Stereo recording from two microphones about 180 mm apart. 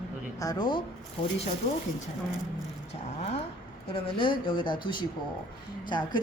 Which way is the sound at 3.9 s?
30° left (ahead or behind).